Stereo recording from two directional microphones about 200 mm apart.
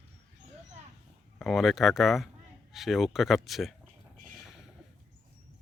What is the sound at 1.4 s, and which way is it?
Speech, centre (ahead or behind).